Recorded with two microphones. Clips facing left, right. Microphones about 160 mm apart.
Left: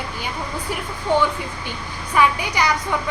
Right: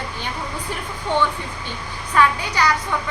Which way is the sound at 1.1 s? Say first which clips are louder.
Left 2 dB; 10° left (ahead or behind).